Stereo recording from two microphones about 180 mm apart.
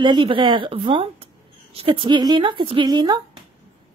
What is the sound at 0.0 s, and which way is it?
A woman's voice, 25° right (ahead or behind).